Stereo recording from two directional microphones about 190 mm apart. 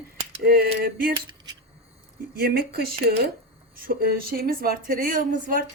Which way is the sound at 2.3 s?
55° right (ahead or behind).